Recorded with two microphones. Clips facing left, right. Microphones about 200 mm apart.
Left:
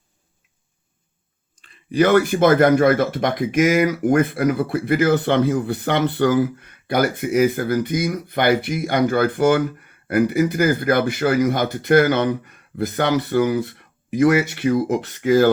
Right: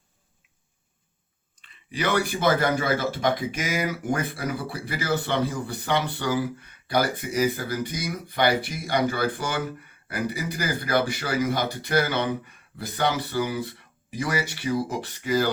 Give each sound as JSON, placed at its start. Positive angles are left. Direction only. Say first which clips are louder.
{"t": 1.6, "sound": "speech", "louder": "left 11 dB", "side_deg": 45}
{"t": 3.2, "sound": "speech", "louder": "left 7 dB", "side_deg": 60}